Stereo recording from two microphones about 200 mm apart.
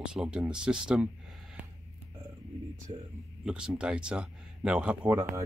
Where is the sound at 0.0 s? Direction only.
5° right (ahead or behind).